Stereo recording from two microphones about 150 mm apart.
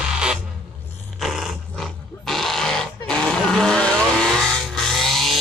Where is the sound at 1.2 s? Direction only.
Centre (ahead or behind).